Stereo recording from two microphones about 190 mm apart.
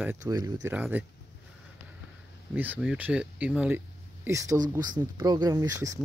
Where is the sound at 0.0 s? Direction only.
15° right (ahead or behind).